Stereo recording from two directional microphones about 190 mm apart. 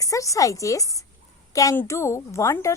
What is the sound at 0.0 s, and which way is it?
A woman's voice, 15° left (ahead or behind).